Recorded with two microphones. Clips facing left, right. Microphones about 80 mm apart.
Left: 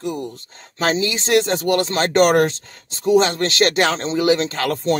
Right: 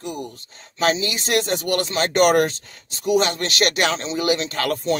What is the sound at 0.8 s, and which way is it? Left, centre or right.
Speech, left.